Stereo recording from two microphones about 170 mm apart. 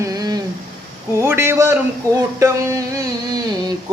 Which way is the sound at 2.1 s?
20° right (ahead or behind).